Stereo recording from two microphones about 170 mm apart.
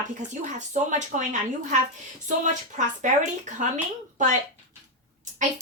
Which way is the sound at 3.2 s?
45° right (ahead or behind).